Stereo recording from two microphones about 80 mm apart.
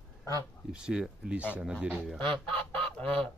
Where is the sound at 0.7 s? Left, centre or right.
Centre.